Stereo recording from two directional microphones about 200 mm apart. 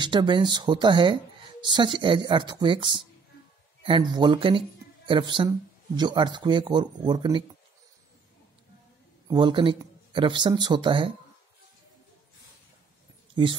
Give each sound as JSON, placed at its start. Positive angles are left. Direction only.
{"t": 0.0, "sound": "speech", "side_deg": -20}
{"t": 9.3, "sound": "speech", "side_deg": -25}
{"t": 13.3, "sound": "speech", "side_deg": -25}